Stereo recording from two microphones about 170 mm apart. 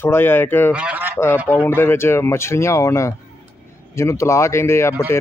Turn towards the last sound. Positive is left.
turn(degrees=15)  # may be behind; listen again after turning